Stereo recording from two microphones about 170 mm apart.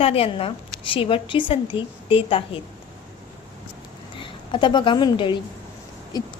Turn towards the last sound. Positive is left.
turn(degrees=25)  # may be behind; listen again after turning